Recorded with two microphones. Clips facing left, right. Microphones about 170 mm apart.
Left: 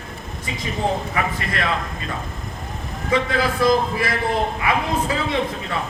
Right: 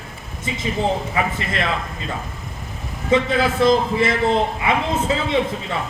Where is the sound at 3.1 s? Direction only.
25° right (ahead or behind).